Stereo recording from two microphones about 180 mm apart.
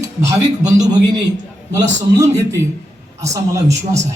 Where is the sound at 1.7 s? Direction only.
15° right (ahead or behind).